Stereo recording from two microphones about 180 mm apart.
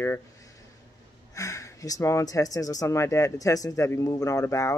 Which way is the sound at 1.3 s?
15° left (ahead or behind).